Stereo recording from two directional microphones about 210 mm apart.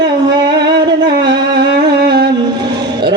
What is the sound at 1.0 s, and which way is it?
Music, 50° right (ahead or behind).